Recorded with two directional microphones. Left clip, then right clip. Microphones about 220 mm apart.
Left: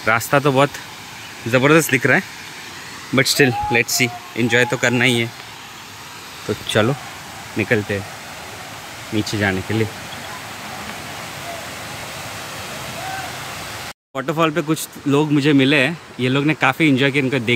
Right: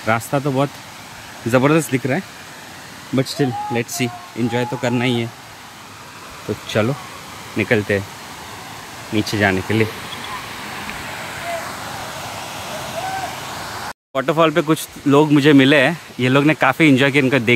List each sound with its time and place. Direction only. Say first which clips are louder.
0.0 s speech: left 3 dB; centre (ahead or behind)
6.8 s speech: left 1 dB; 5° left (ahead or behind)
9.1 s speech: right 3 dB; 10° right (ahead or behind)
14.1 s speech: right 4 dB; 10° right (ahead or behind)